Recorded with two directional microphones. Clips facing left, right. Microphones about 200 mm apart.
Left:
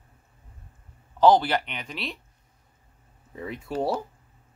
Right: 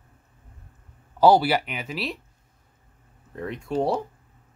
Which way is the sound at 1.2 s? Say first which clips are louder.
Right 1 dB; 10° right (ahead or behind).